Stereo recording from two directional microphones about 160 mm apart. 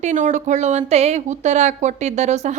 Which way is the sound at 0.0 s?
55° right (ahead or behind).